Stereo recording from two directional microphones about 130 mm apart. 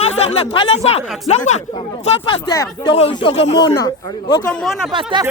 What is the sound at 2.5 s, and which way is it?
Speech, 30° left (ahead or behind).